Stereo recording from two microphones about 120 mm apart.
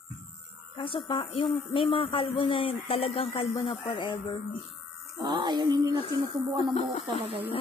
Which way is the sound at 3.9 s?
40° left (ahead or behind).